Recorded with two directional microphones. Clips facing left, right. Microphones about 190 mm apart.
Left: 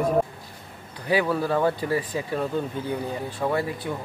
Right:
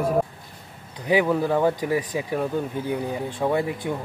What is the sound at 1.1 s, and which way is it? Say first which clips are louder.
Speech: right 2 dB; 15° right (ahead or behind).